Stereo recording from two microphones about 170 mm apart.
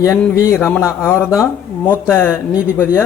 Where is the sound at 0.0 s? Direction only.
15° left (ahead or behind).